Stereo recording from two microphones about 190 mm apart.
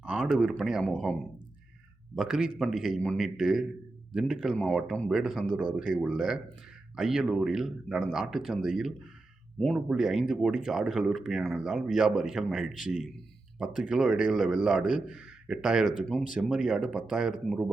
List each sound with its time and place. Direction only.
0.1 s speech: 5° right (ahead or behind)
5.6 s speech: 45° left (ahead or behind)
6.1 s speech: centre (ahead or behind)